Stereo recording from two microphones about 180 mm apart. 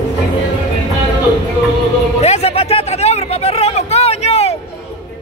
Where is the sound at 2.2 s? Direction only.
35° left (ahead or behind).